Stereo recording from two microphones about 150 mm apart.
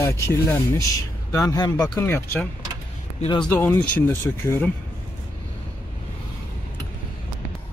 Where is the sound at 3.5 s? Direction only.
15° left (ahead or behind).